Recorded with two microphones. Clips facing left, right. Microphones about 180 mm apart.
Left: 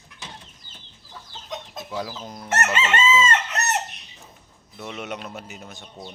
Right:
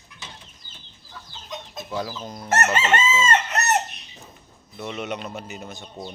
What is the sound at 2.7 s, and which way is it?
Chicken, 40° right (ahead or behind).